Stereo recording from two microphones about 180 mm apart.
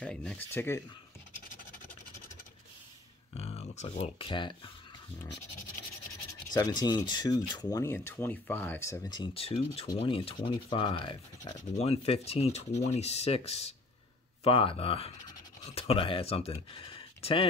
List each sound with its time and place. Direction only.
0.0 s speech: 5° left (ahead or behind)
3.3 s speech: 35° left (ahead or behind)
6.5 s speech: 20° left (ahead or behind)